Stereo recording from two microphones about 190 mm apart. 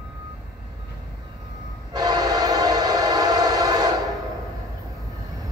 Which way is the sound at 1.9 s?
20° right (ahead or behind).